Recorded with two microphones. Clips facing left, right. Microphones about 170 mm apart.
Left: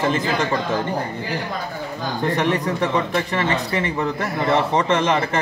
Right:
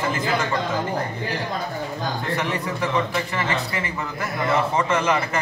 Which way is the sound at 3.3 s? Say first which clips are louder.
Left 4 dB; 30° left (ahead or behind).